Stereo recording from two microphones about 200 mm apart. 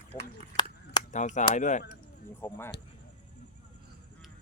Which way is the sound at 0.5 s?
55° right (ahead or behind).